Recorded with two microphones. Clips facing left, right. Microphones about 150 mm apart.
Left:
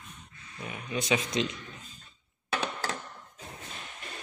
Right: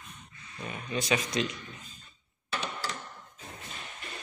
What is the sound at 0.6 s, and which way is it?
Speech, 10° left (ahead or behind).